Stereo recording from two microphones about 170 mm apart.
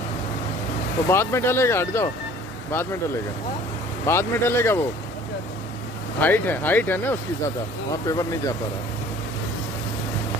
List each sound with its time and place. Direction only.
1.0 s speech: 15° left (ahead or behind)
4.0 s speech: 15° left (ahead or behind)
6.1 s speech: 10° left (ahead or behind)